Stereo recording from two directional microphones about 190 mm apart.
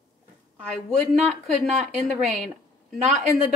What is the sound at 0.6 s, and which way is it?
A woman's voice, centre (ahead or behind).